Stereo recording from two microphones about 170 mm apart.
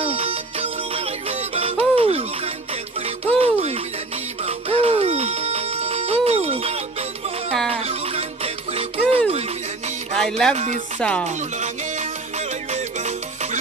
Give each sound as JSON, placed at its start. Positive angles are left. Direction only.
{"t": 0.0, "sound": "music", "side_deg": -35}
{"t": 10.1, "sound": "music", "side_deg": 5}
{"t": 10.5, "sound": "music", "side_deg": -40}
{"t": 11.0, "sound": "music", "side_deg": 5}
{"t": 11.2, "sound": "music", "side_deg": -45}